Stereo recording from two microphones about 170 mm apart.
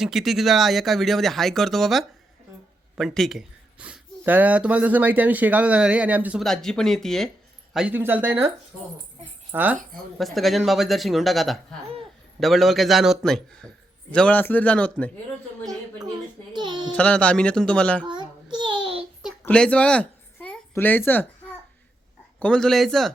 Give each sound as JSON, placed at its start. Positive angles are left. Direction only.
{"t": 0.0, "sound": "speech", "side_deg": 0}
{"t": 6.4, "sound": "speech", "side_deg": 0}
{"t": 10.2, "sound": "a man's voice", "side_deg": 0}
{"t": 16.5, "sound": "child singing", "side_deg": -25}
{"t": 16.9, "sound": "a man's voice", "side_deg": 5}
{"t": 18.0, "sound": "child singing", "side_deg": -25}
{"t": 19.4, "sound": "a sound", "side_deg": 5}
{"t": 22.4, "sound": "speech", "side_deg": 5}